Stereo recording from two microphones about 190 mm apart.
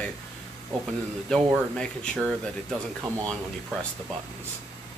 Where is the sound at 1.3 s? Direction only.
5° left (ahead or behind).